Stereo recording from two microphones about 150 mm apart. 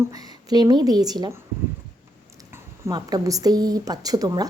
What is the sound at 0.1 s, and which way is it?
Speech, 25° right (ahead or behind).